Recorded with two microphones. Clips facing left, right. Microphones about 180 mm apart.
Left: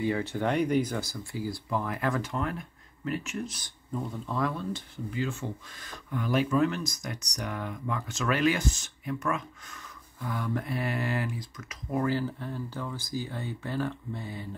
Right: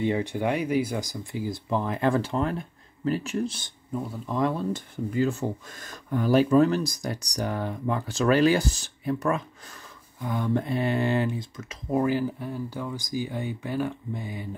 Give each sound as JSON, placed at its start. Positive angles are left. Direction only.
{"t": 0.0, "sound": "speech", "side_deg": -20}
{"t": 3.9, "sound": "speech", "side_deg": -10}
{"t": 4.4, "sound": "speech", "side_deg": -25}
{"t": 4.7, "sound": "speech", "side_deg": -45}
{"t": 10.2, "sound": "speech", "side_deg": -25}